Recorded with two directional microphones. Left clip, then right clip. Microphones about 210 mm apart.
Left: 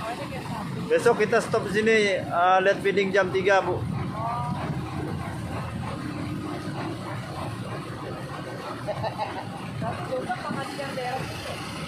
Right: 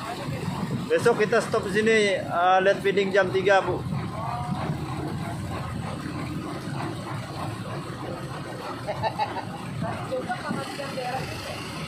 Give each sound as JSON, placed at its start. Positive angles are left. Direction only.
{"t": 0.8, "sound": "speech", "side_deg": 0}